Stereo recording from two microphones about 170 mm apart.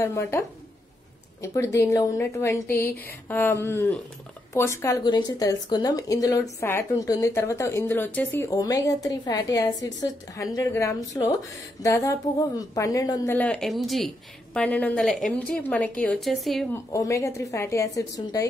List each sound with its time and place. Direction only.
0.0 s a woman's voice: 15° left (ahead or behind)
16.7 s a woman's voice: 20° left (ahead or behind)